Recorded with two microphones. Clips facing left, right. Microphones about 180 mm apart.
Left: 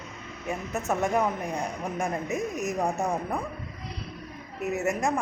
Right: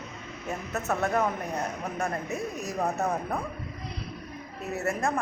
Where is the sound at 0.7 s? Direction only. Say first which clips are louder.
Left 1 dB; 15° left (ahead or behind).